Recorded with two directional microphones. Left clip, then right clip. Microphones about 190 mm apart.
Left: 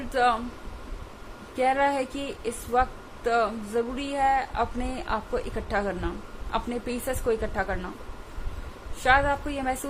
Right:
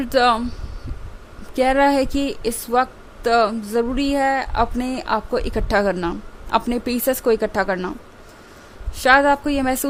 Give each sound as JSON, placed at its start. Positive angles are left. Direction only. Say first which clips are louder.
{"t": 0.1, "sound": "speech", "louder": "right 7 dB", "side_deg": -60}
{"t": 1.5, "sound": "speech", "louder": "right 7 dB", "side_deg": -60}
{"t": 9.0, "sound": "speech", "louder": "right 8 dB", "side_deg": -60}